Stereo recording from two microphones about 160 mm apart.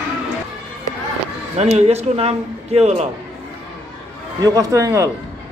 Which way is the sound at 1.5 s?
40° right (ahead or behind).